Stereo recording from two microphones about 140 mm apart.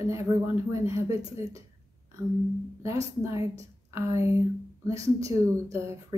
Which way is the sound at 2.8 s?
20° right (ahead or behind).